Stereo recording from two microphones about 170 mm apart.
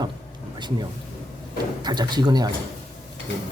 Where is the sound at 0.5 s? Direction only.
25° right (ahead or behind).